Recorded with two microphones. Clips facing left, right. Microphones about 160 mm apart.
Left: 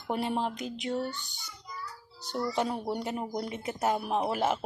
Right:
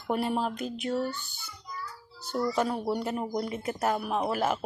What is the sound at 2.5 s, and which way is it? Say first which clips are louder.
A child's voice: right 1 dB; 20° left (ahead or behind).